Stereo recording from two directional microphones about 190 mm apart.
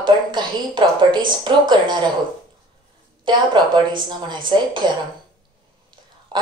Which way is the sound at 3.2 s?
25° right (ahead or behind).